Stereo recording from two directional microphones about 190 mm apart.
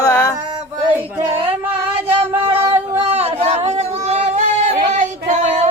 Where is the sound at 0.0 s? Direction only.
15° left (ahead or behind).